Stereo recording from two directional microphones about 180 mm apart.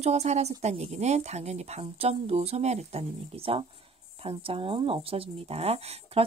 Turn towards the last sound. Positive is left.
turn(degrees=-35)  # may be behind; listen again after turning